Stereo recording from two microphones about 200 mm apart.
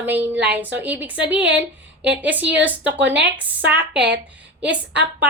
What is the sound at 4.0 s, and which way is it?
Speech, 60° right (ahead or behind).